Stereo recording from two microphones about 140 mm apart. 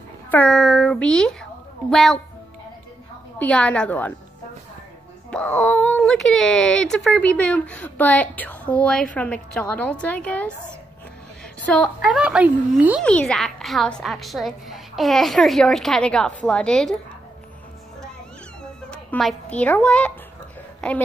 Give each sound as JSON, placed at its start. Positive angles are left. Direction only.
{"t": 0.3, "sound": "a sound", "side_deg": 5}
{"t": 3.3, "sound": "speech", "side_deg": 10}
{"t": 5.3, "sound": "speech", "side_deg": 10}
{"t": 11.7, "sound": "a woman's voice", "side_deg": 0}
{"t": 13.0, "sound": "a woman's voice", "side_deg": 5}
{"t": 18.6, "sound": "cat", "side_deg": 5}